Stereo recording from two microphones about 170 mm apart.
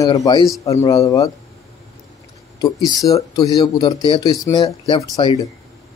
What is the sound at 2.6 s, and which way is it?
Speech, 20° left (ahead or behind).